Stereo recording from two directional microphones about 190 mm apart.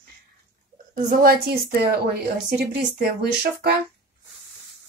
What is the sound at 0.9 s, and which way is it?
A woman's voice, 50° right (ahead or behind).